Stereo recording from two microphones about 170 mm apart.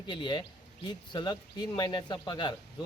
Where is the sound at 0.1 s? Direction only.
25° left (ahead or behind).